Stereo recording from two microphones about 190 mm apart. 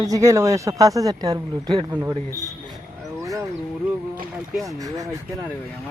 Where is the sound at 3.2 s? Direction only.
15° right (ahead or behind).